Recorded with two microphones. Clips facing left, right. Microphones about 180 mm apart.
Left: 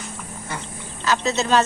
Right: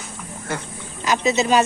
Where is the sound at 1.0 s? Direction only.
15° right (ahead or behind).